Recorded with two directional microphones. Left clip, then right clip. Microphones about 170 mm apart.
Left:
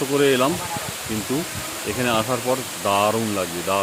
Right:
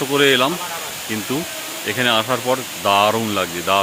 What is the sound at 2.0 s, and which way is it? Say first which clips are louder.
Speech: right 4 dB; centre (ahead or behind).